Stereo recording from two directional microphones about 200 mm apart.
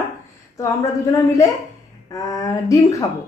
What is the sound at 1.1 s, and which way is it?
A woman's voice, 15° left (ahead or behind).